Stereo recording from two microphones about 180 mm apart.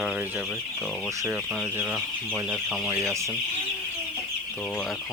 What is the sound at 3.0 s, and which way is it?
Speech, 15° right (ahead or behind).